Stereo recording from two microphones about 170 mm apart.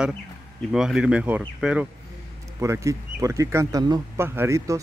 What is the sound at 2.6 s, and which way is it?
Speech, 15° right (ahead or behind).